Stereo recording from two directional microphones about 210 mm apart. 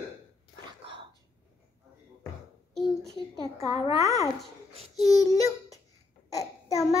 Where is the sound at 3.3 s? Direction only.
20° left (ahead or behind).